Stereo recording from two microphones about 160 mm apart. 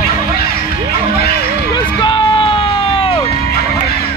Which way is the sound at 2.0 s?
30° left (ahead or behind).